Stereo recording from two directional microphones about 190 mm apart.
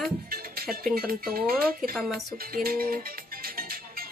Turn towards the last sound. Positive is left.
turn(degrees=-50)  # may be behind; listen again after turning